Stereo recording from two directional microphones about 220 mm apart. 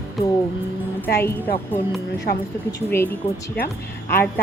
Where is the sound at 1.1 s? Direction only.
10° left (ahead or behind).